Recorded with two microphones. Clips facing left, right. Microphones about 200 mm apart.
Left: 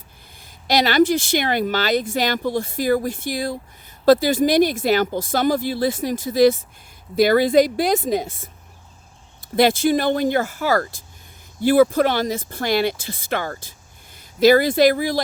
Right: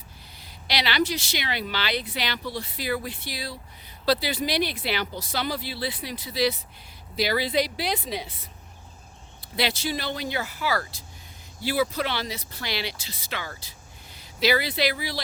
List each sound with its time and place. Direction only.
0.3 s speech: 45° left (ahead or behind)